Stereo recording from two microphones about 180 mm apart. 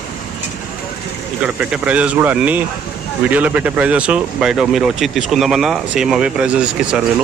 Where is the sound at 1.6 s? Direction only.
5° right (ahead or behind).